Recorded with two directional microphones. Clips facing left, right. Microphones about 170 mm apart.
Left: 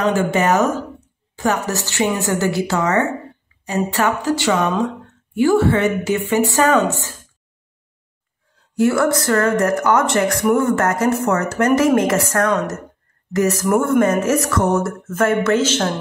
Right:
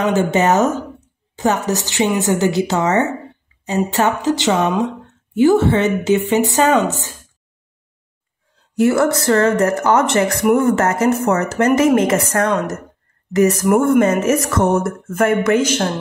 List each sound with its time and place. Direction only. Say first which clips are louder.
0.2 s a woman's voice: right 2 dB; 25° right (ahead or behind)
8.7 s a woman's voice: right 1 dB; 20° right (ahead or behind)